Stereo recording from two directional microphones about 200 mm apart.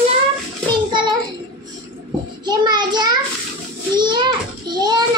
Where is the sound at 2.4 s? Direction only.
20° right (ahead or behind).